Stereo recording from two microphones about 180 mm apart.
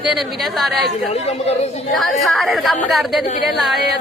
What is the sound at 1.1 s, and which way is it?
Speech, 35° left (ahead or behind).